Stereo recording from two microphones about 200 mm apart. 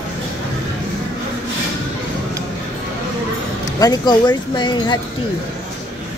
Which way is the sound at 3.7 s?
20° left (ahead or behind).